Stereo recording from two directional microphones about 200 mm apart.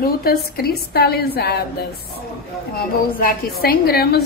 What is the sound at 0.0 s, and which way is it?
A woman's voice, 50° left (ahead or behind).